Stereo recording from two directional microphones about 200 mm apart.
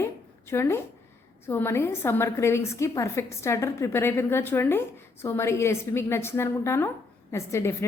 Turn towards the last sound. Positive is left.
turn(degrees=15)  # may be behind; listen again after turning